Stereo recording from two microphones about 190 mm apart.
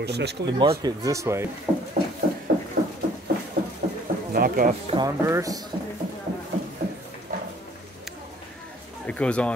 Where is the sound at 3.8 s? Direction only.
45° right (ahead or behind).